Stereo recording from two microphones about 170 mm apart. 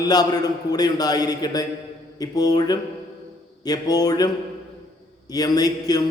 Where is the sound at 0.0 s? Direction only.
25° left (ahead or behind).